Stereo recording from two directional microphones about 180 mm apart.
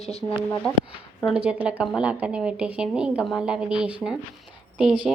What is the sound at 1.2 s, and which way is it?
A woman's voice, 5° right (ahead or behind).